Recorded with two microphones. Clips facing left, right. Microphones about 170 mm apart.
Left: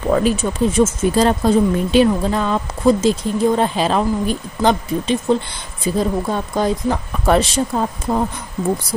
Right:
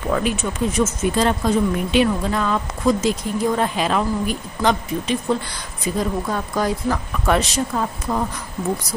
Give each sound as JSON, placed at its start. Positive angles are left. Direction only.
{"t": 0.1, "sound": "a woman's voice", "side_deg": 35}